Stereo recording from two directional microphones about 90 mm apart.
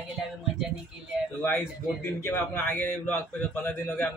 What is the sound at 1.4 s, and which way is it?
A man's voice, 25° left (ahead or behind).